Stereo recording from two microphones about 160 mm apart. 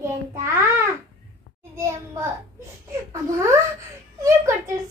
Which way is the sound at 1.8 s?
15° right (ahead or behind).